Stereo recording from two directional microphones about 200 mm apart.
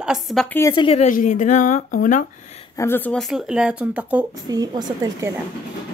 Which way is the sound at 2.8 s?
10° left (ahead or behind).